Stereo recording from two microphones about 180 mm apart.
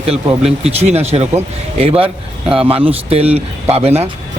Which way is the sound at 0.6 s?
35° right (ahead or behind).